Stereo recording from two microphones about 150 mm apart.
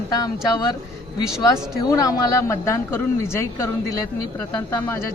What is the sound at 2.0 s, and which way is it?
A woman's voice, 20° left (ahead or behind).